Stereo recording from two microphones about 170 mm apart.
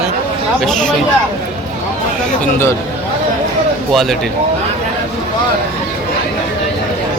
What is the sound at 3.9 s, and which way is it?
Speech, centre (ahead or behind).